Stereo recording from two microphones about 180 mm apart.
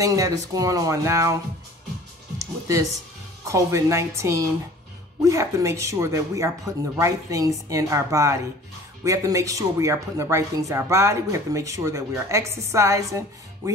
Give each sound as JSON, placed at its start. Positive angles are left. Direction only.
{"t": 0.0, "sound": "speech", "side_deg": -20}